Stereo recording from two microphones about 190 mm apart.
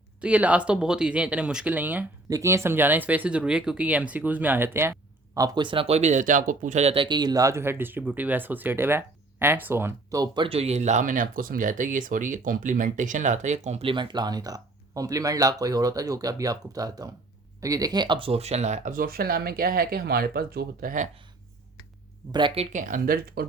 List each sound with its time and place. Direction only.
0.2 s speech: 5° right (ahead or behind); by 21.1 s 45° right (ahead or behind)
22.3 s speech: 25° right (ahead or behind); by 23.5 s 55° right (ahead or behind)